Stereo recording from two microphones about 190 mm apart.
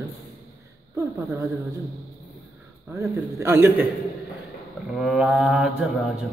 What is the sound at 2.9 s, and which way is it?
Speech, 15° right (ahead or behind).